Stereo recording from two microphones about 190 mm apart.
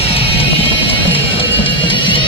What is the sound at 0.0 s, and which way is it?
Music, 30° left (ahead or behind).